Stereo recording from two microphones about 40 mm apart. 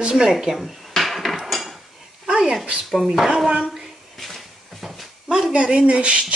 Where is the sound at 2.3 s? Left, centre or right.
Right.